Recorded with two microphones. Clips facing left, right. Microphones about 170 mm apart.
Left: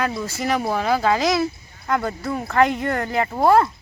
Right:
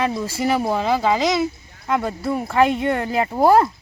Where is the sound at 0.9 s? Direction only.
Centre (ahead or behind).